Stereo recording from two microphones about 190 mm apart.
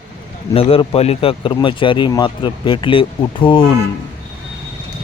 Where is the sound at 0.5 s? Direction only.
30° left (ahead or behind).